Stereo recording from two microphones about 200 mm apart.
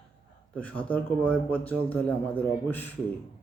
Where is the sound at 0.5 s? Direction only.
5° left (ahead or behind).